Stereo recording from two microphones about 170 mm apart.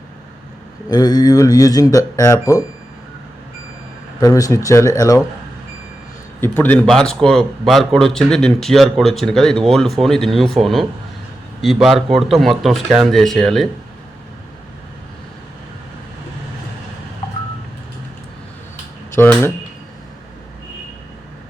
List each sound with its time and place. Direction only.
0.9 s speech: 25° left (ahead or behind)
4.2 s speech: 20° left (ahead or behind)
6.4 s a man's voice: 10° left (ahead or behind)
19.1 s speech: 15° left (ahead or behind)